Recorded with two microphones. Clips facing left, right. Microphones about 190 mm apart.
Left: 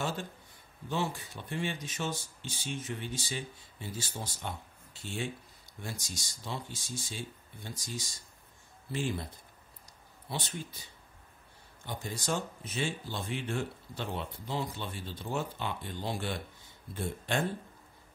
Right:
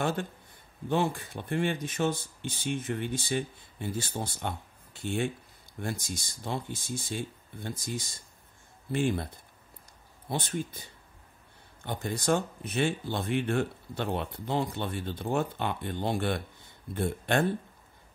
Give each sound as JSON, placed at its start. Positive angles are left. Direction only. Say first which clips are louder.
{"t": 0.0, "sound": "speech", "louder": "right 5 dB", "side_deg": -60}